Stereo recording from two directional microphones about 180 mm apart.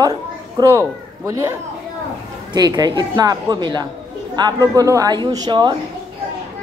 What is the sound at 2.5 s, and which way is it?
Speech, 20° right (ahead or behind).